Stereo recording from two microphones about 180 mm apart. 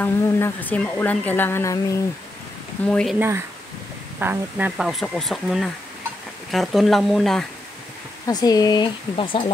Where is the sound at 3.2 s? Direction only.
15° right (ahead or behind).